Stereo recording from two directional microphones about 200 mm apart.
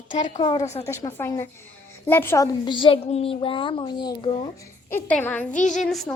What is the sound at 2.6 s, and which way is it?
Speech, 25° left (ahead or behind).